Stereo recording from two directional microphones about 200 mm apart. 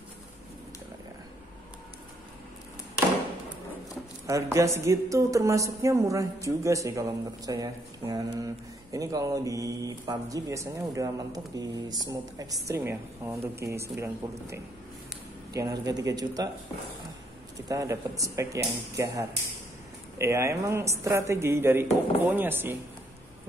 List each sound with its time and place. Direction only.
4.3 s speech: 15° right (ahead or behind)
15.5 s speech: 15° right (ahead or behind)
17.6 s speech: 15° right (ahead or behind)